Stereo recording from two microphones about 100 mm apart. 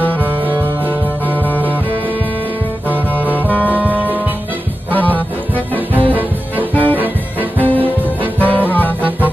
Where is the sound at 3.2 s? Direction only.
15° left (ahead or behind).